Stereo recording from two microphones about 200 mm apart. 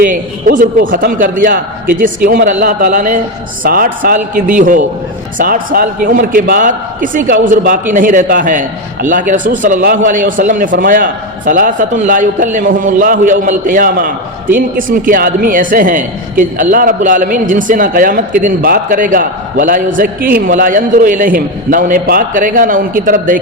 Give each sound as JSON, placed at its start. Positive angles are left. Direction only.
{"t": 0.0, "sound": "a man's voice", "side_deg": -40}